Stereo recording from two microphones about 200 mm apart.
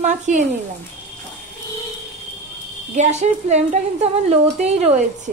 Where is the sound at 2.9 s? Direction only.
35° right (ahead or behind).